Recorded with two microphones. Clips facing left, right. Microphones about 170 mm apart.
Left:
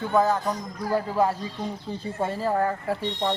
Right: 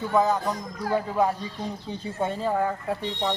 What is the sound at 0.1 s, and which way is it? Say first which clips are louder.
Speech: left 1 dB; centre (ahead or behind).